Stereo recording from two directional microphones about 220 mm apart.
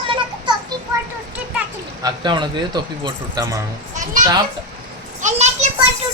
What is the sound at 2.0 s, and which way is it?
Speech, 20° right (ahead or behind).